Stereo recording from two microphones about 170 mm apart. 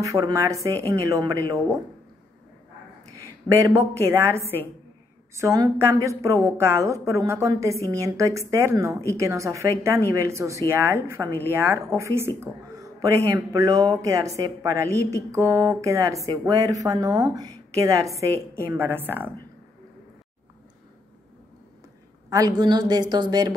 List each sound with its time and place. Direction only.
0.0 s a woman's voice: 20° right (ahead or behind)
3.4 s a woman's voice: 20° right (ahead or behind)
22.3 s a woman's voice: 25° right (ahead or behind)